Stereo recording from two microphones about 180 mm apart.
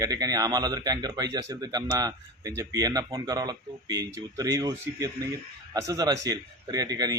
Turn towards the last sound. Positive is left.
turn(degrees=-20)  # may be behind; listen again after turning